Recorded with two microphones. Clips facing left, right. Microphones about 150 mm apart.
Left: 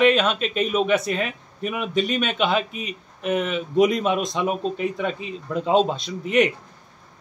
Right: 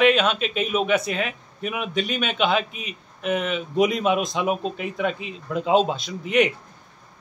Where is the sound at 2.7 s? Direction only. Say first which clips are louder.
Left 4 dB; 40° left (ahead or behind).